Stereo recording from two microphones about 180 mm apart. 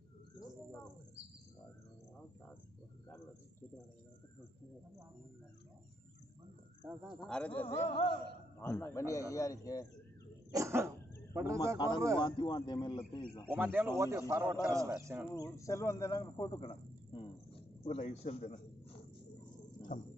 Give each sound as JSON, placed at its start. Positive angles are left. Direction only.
{"t": 7.2, "sound": "a man's voice", "side_deg": 5}
{"t": 7.8, "sound": "a man's voice", "side_deg": 30}
{"t": 8.5, "sound": "a man's voice", "side_deg": 15}
{"t": 10.5, "sound": "cough", "side_deg": -15}
{"t": 11.3, "sound": "a man's voice", "side_deg": -15}
{"t": 12.2, "sound": "a man's voice", "side_deg": 25}
{"t": 13.5, "sound": "a man's voice", "side_deg": -10}
{"t": 15.3, "sound": "a man's voice", "side_deg": 20}